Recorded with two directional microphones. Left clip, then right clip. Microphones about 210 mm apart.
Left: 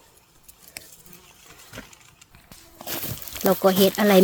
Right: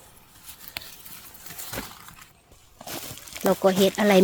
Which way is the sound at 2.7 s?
20° left (ahead or behind).